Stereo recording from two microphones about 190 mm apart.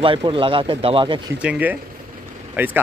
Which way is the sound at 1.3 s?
5° right (ahead or behind).